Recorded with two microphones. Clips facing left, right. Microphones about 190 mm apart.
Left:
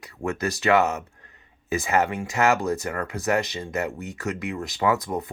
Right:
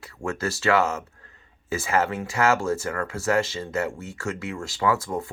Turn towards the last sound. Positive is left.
turn(degrees=20)  # may be behind; listen again after turning